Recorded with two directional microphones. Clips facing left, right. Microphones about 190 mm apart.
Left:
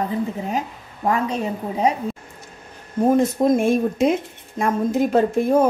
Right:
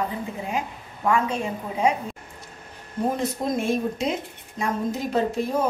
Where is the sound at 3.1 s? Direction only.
50° left (ahead or behind).